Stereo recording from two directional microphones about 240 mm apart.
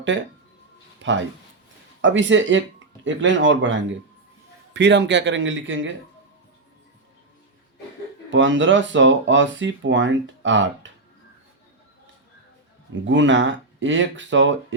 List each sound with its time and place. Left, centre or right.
1.0 s speech: right
8.3 s speech: right
12.9 s speech: right